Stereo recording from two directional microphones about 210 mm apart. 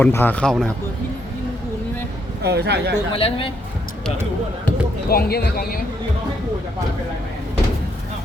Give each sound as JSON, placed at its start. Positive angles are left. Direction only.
{"t": 0.0, "sound": "speech", "side_deg": 10}
{"t": 2.4, "sound": "speech", "side_deg": -50}
{"t": 3.1, "sound": "a man's voice", "side_deg": 25}
{"t": 5.0, "sound": "speech", "side_deg": 45}